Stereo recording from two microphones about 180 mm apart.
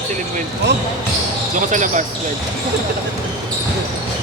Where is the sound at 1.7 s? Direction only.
45° right (ahead or behind).